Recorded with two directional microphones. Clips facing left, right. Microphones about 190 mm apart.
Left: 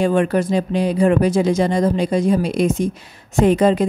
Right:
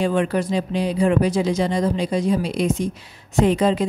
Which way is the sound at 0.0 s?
50° left (ahead or behind).